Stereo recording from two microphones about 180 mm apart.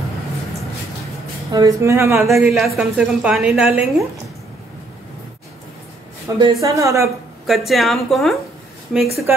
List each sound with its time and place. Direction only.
1.5 s speech: 20° right (ahead or behind)
2.4 s a woman's voice: centre (ahead or behind)
6.2 s speech: 20° right (ahead or behind)
7.4 s a woman's voice: centre (ahead or behind)